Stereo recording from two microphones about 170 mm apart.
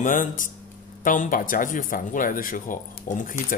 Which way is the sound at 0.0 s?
50° left (ahead or behind).